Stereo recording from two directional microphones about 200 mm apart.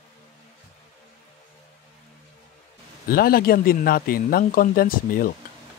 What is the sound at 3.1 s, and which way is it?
Speech, 50° left (ahead or behind).